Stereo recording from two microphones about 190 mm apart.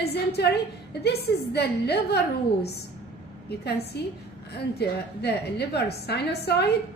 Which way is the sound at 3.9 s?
60° left (ahead or behind).